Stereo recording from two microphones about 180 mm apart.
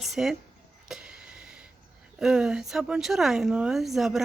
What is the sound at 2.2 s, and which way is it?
Speech, 5° right (ahead or behind).